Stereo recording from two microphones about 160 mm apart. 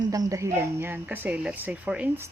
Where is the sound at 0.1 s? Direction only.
20° right (ahead or behind).